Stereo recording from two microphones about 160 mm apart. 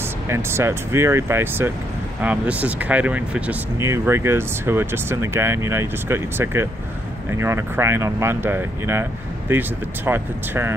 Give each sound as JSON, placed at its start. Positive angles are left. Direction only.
{"t": 0.3, "sound": "speech", "side_deg": -15}